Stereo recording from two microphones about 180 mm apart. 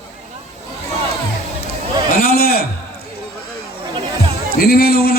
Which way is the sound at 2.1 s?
55° left (ahead or behind).